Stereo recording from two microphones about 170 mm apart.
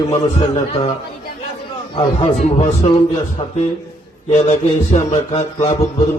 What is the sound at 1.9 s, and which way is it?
A man's voice, 35° left (ahead or behind).